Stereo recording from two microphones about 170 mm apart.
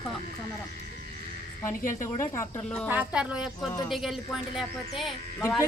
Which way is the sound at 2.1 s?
15° left (ahead or behind).